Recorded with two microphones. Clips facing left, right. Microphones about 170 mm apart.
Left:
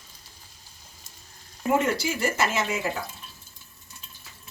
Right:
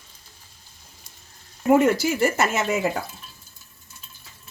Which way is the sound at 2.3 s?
50° right (ahead or behind).